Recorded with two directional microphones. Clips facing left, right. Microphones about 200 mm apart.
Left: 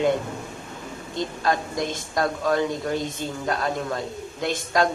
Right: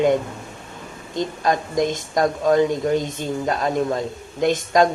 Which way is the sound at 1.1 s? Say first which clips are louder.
Right 3 dB; 20° right (ahead or behind).